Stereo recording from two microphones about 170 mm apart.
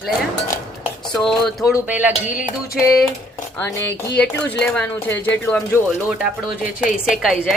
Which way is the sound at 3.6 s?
15° left (ahead or behind).